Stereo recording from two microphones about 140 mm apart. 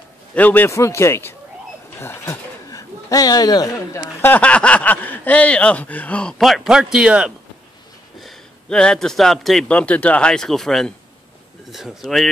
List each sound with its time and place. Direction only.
0.3 s a man's voice: 10° left (ahead or behind)